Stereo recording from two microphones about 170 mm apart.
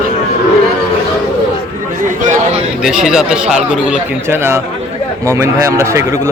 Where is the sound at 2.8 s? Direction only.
5° right (ahead or behind).